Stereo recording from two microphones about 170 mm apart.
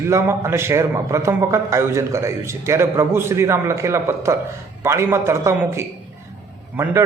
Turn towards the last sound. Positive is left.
turn(degrees=-10)  # may be behind; listen again after turning